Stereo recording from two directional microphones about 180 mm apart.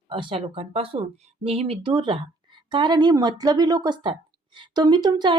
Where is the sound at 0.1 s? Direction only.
30° right (ahead or behind).